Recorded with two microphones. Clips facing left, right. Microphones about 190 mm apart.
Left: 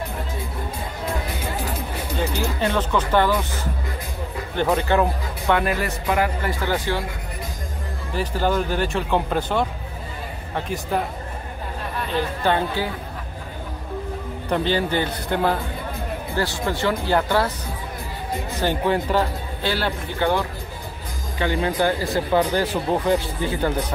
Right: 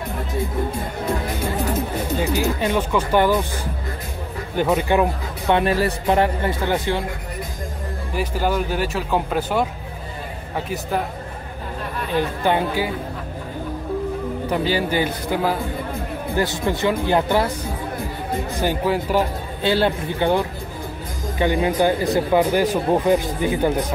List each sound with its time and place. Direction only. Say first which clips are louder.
2.3 s speech: right 2 dB; 10° right (ahead or behind)
4.6 s speech: right 1 dB; 10° right (ahead or behind)
5.5 s speech: right 3 dB; 30° right (ahead or behind)
8.1 s speech: even; 10° right (ahead or behind)
12.4 s speech: right 1 dB; 10° right (ahead or behind)
14.5 s speech: even; 10° right (ahead or behind)
16.3 s speech: right 3 dB; 20° right (ahead or behind)
18.6 s speech: even; 10° right (ahead or behind)
19.6 s speech: right 6 dB; 20° right (ahead or behind)